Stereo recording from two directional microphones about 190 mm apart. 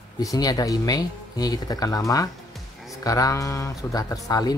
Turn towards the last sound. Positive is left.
turn(degrees=20)  # may be behind; listen again after turning